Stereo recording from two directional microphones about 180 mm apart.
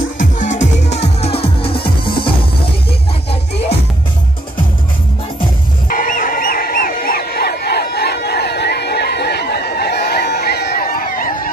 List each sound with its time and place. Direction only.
0.2 s music: 45° left (ahead or behind); by 2.3 s 30° left (ahead or behind)
5.9 s fowl: 50° left (ahead or behind)